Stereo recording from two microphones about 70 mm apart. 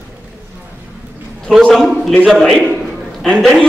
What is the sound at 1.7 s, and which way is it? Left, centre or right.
A man's voice, centre.